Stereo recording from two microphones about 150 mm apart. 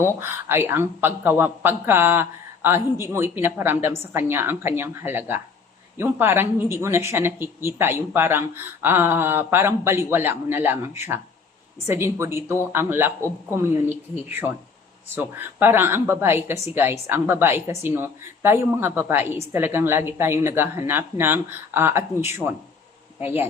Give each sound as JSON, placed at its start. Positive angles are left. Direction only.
{"t": 0.2, "sound": "speech", "side_deg": -15}
{"t": 14.3, "sound": "speech", "side_deg": -15}